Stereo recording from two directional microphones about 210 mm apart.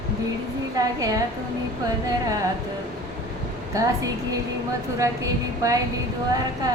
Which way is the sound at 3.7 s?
15° right (ahead or behind).